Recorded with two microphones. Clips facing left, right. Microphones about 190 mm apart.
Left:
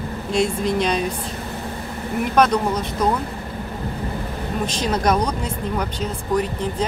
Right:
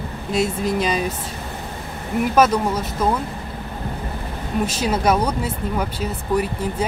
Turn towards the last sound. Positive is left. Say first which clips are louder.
# even
turn(degrees=-10)  # may be behind; listen again after turning